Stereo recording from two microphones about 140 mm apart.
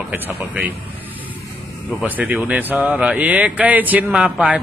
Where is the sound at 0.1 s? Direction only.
10° right (ahead or behind).